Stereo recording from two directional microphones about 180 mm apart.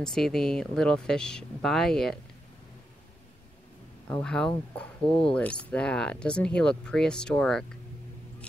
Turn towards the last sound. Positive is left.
turn(degrees=5)  # may be behind; listen again after turning